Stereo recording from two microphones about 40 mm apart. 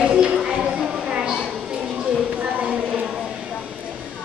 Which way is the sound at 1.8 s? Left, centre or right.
Right.